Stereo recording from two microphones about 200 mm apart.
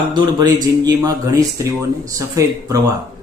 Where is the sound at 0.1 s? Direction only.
20° right (ahead or behind).